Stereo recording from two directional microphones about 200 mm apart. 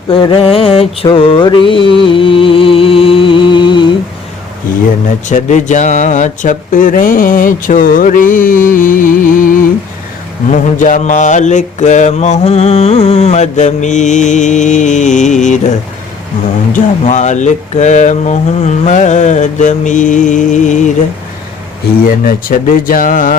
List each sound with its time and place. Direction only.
0.1 s mantra: 25° left (ahead or behind)
5.3 s speech: 35° left (ahead or behind)
10.5 s mantra: 40° left (ahead or behind)
16.7 s mantra: 35° left (ahead or behind)
22.0 s speech: 45° left (ahead or behind)